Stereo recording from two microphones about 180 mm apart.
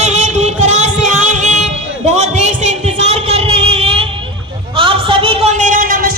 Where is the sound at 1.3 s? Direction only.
40° right (ahead or behind).